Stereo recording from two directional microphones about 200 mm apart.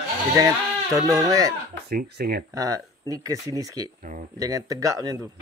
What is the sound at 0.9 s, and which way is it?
Speech, 15° right (ahead or behind).